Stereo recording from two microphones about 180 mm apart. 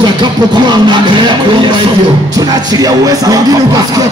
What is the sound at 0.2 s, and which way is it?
Music, 25° right (ahead or behind).